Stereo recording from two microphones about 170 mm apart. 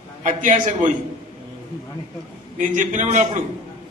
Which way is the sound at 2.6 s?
50° right (ahead or behind).